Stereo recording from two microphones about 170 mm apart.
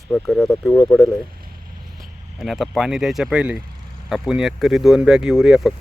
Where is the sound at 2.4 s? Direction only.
Centre (ahead or behind).